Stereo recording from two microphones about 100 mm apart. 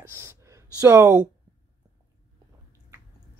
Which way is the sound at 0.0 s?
25° right (ahead or behind).